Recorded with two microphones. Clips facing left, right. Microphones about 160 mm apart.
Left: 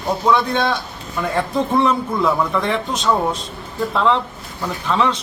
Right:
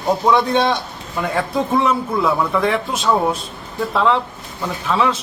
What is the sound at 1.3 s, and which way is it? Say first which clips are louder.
A man's voice: left 1 dB; 10° right (ahead or behind).